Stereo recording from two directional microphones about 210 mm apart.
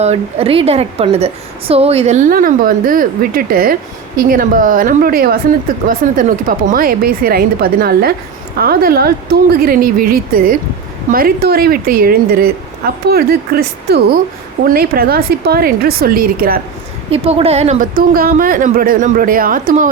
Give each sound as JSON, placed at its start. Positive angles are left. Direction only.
{"t": 0.0, "sound": "a woman's voice", "side_deg": -30}
{"t": 17.1, "sound": "speech", "side_deg": -30}